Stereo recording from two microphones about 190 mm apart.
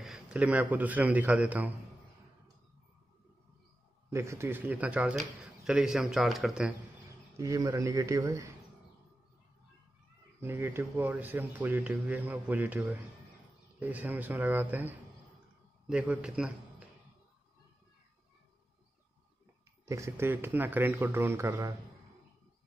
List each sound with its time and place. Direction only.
0.0 s a man's voice: 5° right (ahead or behind)
4.1 s speech: 15° right (ahead or behind)
7.3 s speech: 15° right (ahead or behind)
10.4 s speech: 10° right (ahead or behind)
19.9 s speech: 15° right (ahead or behind)